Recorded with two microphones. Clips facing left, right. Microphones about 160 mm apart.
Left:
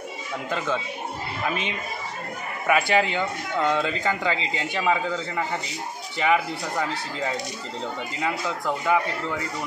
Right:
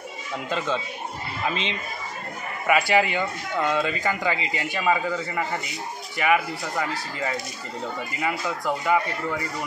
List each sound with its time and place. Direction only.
1.5 s speech: 20° right (ahead or behind)
2.6 s a man's voice: 10° right (ahead or behind)
8.2 s speech: 15° right (ahead or behind)